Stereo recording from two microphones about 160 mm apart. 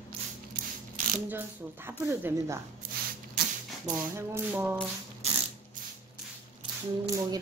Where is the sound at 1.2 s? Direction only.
10° right (ahead or behind).